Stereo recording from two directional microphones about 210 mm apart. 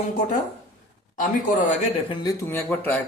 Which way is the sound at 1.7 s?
25° left (ahead or behind).